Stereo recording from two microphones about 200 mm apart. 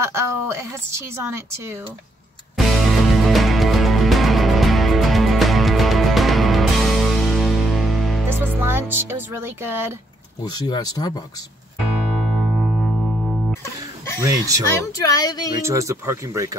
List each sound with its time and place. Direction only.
0.0 s a woman's voice: 15° right (ahead or behind)
2.5 s music: centre (ahead or behind)
8.3 s music: 10° right (ahead or behind)
10.4 s speech: 20° left (ahead or behind)
12.2 s music: centre (ahead or behind)
14.2 s a woman's voice: 15° right (ahead or behind)
15.0 s speech: 20° left (ahead or behind)
15.6 s a woman's voice: 15° right (ahead or behind)